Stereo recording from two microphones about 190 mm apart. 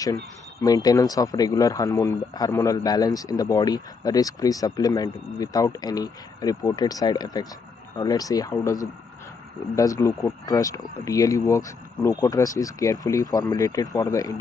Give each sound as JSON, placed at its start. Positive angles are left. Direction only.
{"t": 0.0, "sound": "speech", "side_deg": 15}